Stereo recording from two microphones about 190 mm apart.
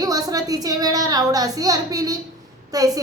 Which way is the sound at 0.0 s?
20° right (ahead or behind).